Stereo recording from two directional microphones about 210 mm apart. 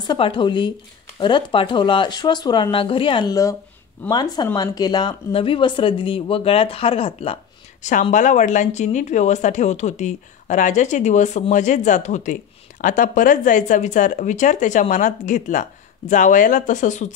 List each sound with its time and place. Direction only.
0.0 s speech: 20° left (ahead or behind)